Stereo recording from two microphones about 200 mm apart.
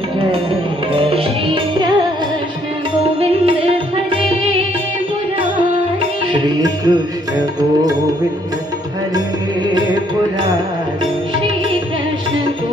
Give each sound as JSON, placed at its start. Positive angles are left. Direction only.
{"t": 0.9, "sound": "music", "side_deg": -25}
{"t": 3.0, "sound": "music", "side_deg": -30}
{"t": 6.4, "sound": "music", "side_deg": -20}